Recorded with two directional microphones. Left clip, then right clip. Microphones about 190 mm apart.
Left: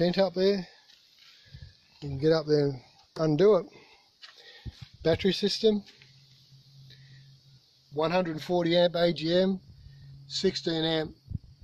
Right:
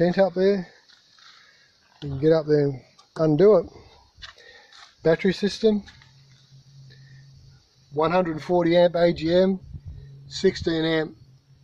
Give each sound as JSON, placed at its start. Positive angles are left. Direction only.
{"t": 0.0, "sound": "speech", "side_deg": 25}
{"t": 0.3, "sound": "speech", "side_deg": 5}
{"t": 2.0, "sound": "speech", "side_deg": 10}
{"t": 5.2, "sound": "speech", "side_deg": 5}
{"t": 7.9, "sound": "speech", "side_deg": 5}